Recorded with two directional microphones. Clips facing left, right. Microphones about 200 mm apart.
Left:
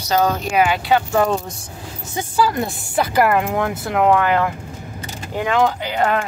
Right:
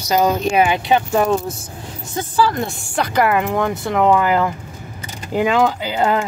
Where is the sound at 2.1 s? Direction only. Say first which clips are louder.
Right 1 dB; 5° left (ahead or behind).